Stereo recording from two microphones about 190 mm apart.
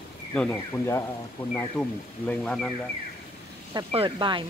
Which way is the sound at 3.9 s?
25° right (ahead or behind).